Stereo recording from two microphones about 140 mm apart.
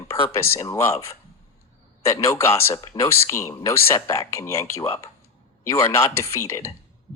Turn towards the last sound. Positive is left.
turn(degrees=20)  # may be behind; listen again after turning